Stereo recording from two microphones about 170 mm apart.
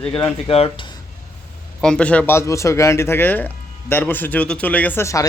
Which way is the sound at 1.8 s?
5° left (ahead or behind).